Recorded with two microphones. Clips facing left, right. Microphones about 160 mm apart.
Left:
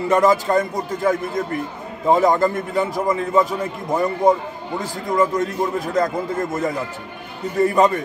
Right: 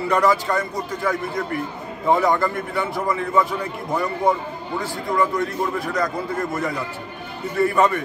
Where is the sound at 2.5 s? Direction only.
40° left (ahead or behind).